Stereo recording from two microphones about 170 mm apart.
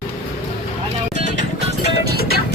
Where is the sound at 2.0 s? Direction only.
70° right (ahead or behind).